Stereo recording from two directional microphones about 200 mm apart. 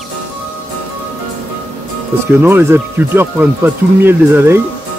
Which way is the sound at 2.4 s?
10° right (ahead or behind).